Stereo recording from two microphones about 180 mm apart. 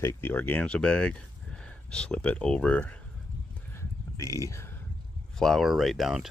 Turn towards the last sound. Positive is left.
turn(degrees=0)  # may be behind; listen again after turning